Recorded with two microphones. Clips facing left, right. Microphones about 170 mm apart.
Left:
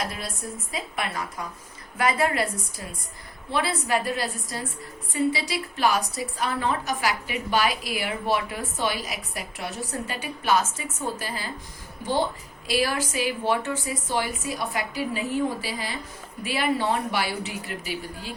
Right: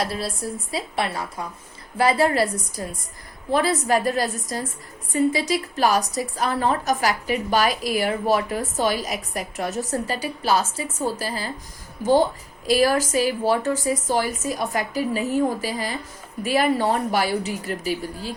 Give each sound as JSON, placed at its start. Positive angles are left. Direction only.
{"t": 0.0, "sound": "a woman's voice", "side_deg": -35}
{"t": 12.6, "sound": "a woman's voice", "side_deg": -40}